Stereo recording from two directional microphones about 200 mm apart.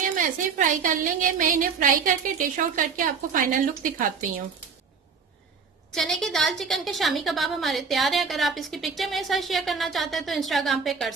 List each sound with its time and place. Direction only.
0.0 s a woman's voice: 40° right (ahead or behind)
5.9 s a woman's voice: centre (ahead or behind)